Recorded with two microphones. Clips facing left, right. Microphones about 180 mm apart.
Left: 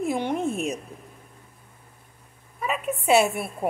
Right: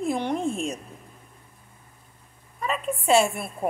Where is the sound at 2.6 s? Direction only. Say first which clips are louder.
Even; 5° left (ahead or behind).